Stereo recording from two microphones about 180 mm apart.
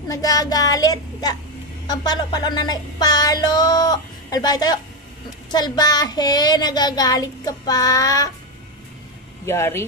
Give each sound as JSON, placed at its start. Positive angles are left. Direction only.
{"t": 0.1, "sound": "music", "side_deg": 20}
{"t": 9.5, "sound": "speech", "side_deg": 15}